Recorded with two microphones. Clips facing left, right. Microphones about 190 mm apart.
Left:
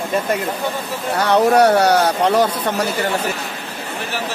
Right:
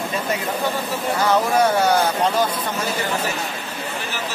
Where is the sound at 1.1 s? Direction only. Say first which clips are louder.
Left 5 dB; 70° left (ahead or behind).